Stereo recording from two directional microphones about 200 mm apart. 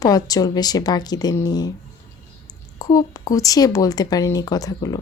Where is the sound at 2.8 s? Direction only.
20° left (ahead or behind).